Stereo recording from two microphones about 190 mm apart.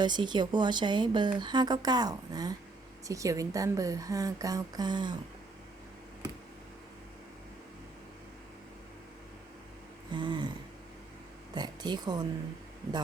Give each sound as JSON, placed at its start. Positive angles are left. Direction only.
{"t": 0.0, "sound": "a woman's voice", "side_deg": -25}
{"t": 10.1, "sound": "a sound", "side_deg": -25}
{"t": 11.5, "sound": "speech", "side_deg": -20}